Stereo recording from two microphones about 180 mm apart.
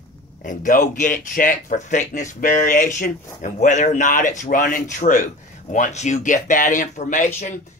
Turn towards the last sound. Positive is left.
turn(degrees=45)  # may be behind; listen again after turning